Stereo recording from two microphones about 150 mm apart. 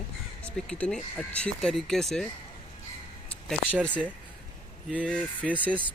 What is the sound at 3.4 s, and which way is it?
Speech, 5° left (ahead or behind).